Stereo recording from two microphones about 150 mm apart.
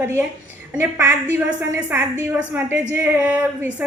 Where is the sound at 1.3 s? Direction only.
15° right (ahead or behind).